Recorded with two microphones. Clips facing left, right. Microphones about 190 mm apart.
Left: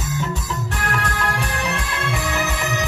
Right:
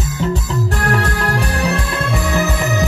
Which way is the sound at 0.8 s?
40° right (ahead or behind).